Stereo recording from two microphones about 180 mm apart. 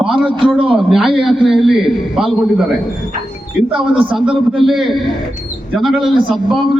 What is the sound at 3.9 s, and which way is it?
Speech, 30° right (ahead or behind).